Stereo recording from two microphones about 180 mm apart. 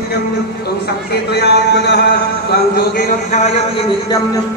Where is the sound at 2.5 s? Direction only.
45° left (ahead or behind).